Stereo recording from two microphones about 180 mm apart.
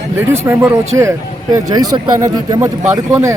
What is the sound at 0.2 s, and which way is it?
Speech, 15° right (ahead or behind).